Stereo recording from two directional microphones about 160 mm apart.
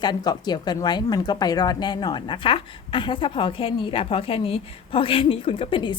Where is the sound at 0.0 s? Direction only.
25° left (ahead or behind).